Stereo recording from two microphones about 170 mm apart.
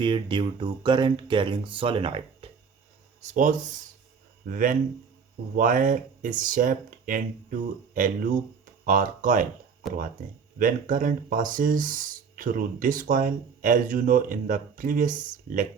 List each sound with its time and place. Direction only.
0.0 s speech: 30° right (ahead or behind)
3.2 s speech: 45° right (ahead or behind)
4.5 s speech: 55° right (ahead or behind)
10.6 s speech: 50° right (ahead or behind)